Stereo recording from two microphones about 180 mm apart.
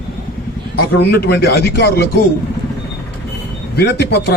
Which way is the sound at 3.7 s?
65° left (ahead or behind).